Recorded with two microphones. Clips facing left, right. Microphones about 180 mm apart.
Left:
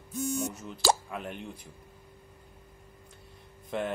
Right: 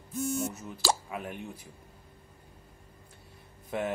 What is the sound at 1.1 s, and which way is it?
Speech, 5° right (ahead or behind).